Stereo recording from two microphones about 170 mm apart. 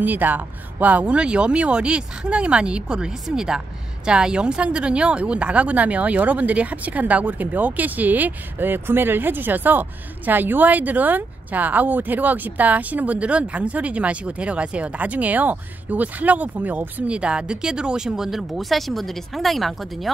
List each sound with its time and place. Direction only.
0.0 s speech: 10° right (ahead or behind)